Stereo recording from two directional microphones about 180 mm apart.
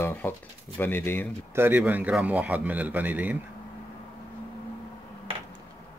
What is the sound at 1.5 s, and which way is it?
A man's voice, 10° right (ahead or behind).